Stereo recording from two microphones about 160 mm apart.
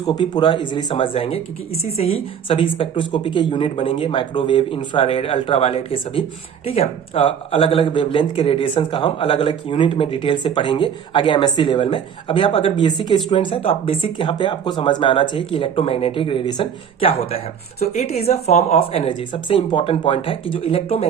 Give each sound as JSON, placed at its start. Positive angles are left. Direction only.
{"t": 0.0, "sound": "speech", "side_deg": 30}